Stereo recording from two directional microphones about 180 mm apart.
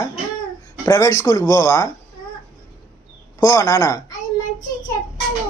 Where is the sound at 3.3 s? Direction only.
20° left (ahead or behind).